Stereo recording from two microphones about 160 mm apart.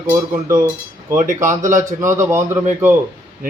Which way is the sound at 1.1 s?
55° right (ahead or behind).